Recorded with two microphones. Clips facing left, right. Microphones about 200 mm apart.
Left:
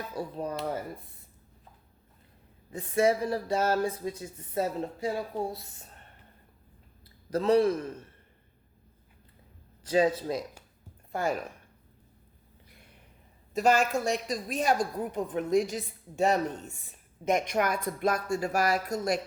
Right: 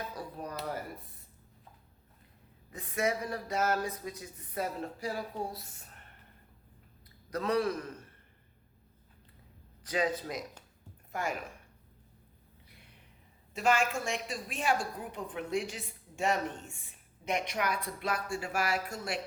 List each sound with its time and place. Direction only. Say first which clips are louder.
0.2 s a sound: left 7 dB; 25° left (ahead or behind)
2.6 s speech: left 7 dB; 30° left (ahead or behind)
7.0 s a man's voice: left 7 dB; 30° left (ahead or behind)
9.8 s a woman's voice: left 7 dB; 30° left (ahead or behind)
13.5 s a woman's voice: left 5 dB; 40° left (ahead or behind)